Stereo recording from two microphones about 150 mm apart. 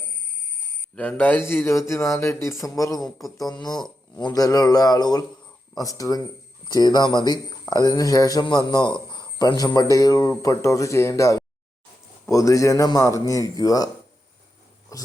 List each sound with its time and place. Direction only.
0.9 s a man's voice: 10° left (ahead or behind)
3.0 s speech: centre (ahead or behind)
3.3 s speech: 25° left (ahead or behind)